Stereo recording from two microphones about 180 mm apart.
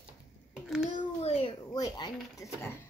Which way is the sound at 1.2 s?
30° left (ahead or behind).